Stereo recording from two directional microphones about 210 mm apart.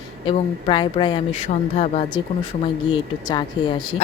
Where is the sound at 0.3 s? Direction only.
25° left (ahead or behind).